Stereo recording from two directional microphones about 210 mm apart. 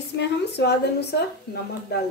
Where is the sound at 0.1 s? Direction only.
55° left (ahead or behind).